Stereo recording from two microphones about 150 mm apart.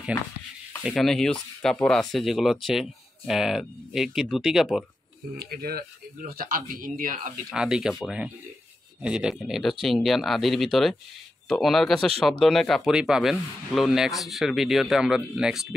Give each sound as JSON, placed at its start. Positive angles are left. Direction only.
{"t": 0.8, "sound": "speech", "side_deg": 0}
{"t": 5.4, "sound": "speech", "side_deg": -90}
{"t": 7.5, "sound": "speech", "side_deg": -5}